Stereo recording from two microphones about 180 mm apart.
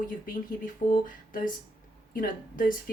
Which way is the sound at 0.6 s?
50° left (ahead or behind).